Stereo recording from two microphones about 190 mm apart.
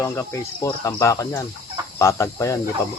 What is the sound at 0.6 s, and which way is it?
Cricket, 15° left (ahead or behind).